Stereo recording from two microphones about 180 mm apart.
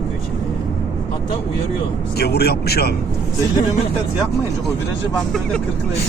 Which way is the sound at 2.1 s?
65° left (ahead or behind).